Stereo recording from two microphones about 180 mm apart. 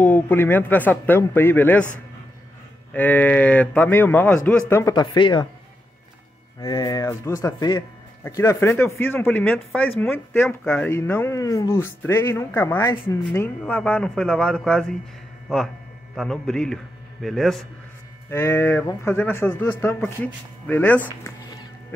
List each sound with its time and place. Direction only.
0.0 s speech: 10° left (ahead or behind)
2.9 s speech: 10° left (ahead or behind); by 5.5 s 25° left (ahead or behind)
6.6 s speech: 20° left (ahead or behind); by 15.0 s 5° left (ahead or behind)
16.2 s speech: 5° left (ahead or behind)
18.3 s speech: 15° left (ahead or behind)